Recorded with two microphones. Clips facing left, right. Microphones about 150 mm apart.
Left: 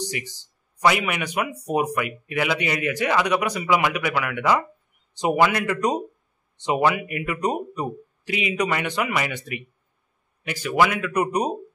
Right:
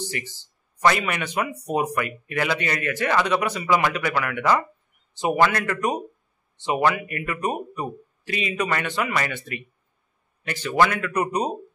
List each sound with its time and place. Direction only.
0.0 s speech: 15° left (ahead or behind)